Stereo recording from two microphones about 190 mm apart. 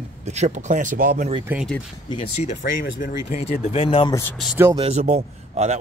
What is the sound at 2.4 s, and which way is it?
Speech, 35° left (ahead or behind).